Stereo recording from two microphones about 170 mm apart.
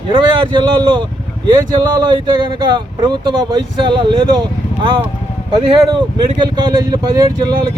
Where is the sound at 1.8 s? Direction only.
25° right (ahead or behind).